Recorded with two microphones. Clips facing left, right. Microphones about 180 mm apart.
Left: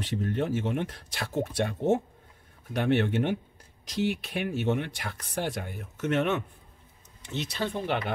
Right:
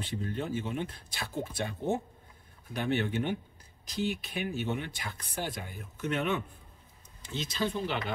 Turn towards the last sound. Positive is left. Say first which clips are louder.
# left 2 dB
turn(degrees=65)  # may be behind; listen again after turning